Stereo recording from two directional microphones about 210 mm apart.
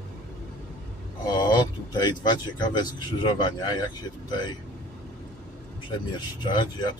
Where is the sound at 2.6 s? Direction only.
20° left (ahead or behind).